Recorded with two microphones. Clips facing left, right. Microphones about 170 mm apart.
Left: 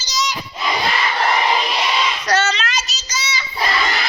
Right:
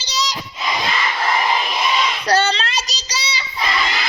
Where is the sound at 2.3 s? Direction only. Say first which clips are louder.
Right 3 dB; 30° right (ahead or behind).